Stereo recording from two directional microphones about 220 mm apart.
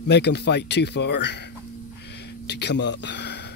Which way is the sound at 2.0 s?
50° left (ahead or behind).